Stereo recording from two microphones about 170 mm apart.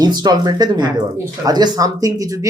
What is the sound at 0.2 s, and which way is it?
Speech, 25° right (ahead or behind).